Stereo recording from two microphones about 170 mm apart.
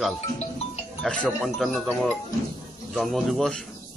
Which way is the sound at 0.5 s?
40° left (ahead or behind).